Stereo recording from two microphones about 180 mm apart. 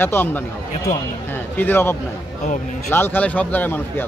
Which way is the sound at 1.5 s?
10° left (ahead or behind).